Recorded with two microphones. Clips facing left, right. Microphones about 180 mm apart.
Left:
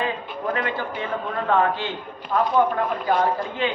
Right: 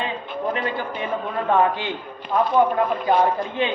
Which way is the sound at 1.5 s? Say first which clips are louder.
Right 2 dB; 15° right (ahead or behind).